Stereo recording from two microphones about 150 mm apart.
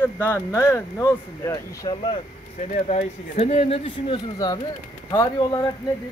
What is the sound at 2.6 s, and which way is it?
Speech, 50° left (ahead or behind).